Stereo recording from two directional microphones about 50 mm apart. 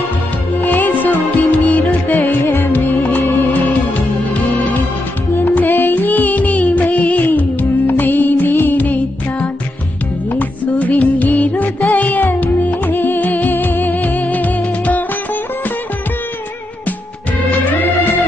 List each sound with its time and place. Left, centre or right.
0.7 s music: left
2.1 s music: left
2.7 s music: left
4.2 s music: left
10.6 s music: left